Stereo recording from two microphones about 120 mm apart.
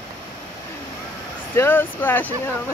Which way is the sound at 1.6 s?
20° left (ahead or behind).